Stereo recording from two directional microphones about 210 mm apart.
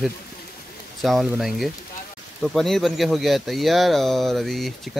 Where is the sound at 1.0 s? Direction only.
Centre (ahead or behind).